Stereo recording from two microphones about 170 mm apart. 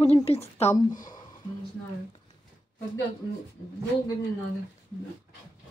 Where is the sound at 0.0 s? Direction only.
35° left (ahead or behind).